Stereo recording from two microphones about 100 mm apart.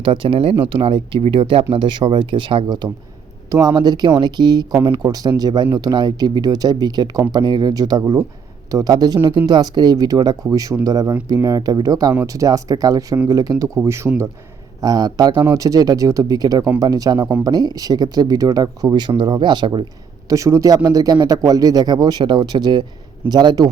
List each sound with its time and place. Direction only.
0.0 s speech: 55° right (ahead or behind)
2.6 s speech: 45° right (ahead or behind); by 14.1 s 25° right (ahead or behind)
14.8 s speech: 40° right (ahead or behind)
15.4 s speech: 35° right (ahead or behind)
20.3 s speech: 30° right (ahead or behind)